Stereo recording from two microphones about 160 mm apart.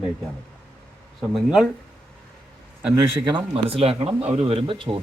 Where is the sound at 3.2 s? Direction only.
35° right (ahead or behind).